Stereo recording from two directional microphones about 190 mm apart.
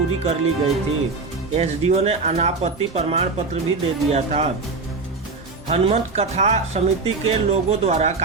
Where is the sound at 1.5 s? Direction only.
35° right (ahead or behind).